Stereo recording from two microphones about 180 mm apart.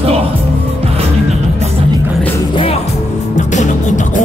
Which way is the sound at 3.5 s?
45° left (ahead or behind).